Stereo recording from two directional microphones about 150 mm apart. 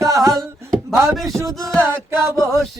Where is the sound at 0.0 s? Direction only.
20° right (ahead or behind).